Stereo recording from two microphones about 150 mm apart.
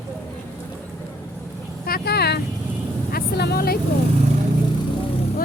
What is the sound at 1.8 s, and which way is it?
Vehicle, 85° left.